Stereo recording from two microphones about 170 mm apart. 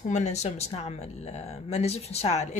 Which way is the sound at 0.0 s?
45° left (ahead or behind).